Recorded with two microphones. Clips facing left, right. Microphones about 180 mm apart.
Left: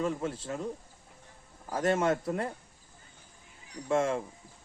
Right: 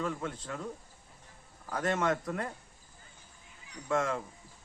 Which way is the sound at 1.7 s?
30° left (ahead or behind).